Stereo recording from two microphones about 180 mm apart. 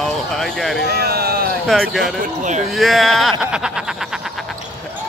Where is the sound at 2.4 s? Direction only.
40° right (ahead or behind).